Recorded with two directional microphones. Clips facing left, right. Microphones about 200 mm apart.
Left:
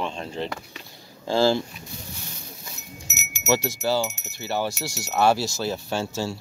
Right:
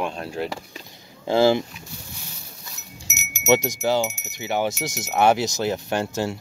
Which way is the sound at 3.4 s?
20° right (ahead or behind).